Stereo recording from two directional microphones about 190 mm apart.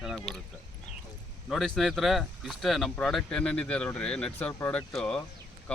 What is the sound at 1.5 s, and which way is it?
Speech, centre (ahead or behind).